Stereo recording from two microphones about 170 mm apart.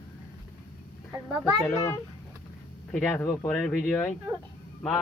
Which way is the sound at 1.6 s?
15° left (ahead or behind).